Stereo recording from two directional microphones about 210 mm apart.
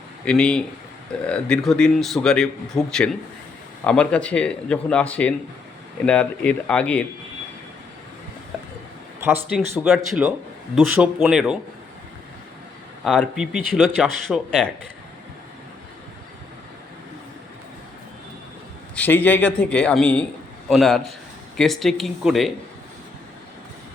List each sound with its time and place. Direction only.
0.3 s a man's voice: 5° left (ahead or behind)
9.2 s a man's voice: 10° right (ahead or behind)
13.1 s a man's voice: centre (ahead or behind)
18.9 s a man's voice: 10° left (ahead or behind)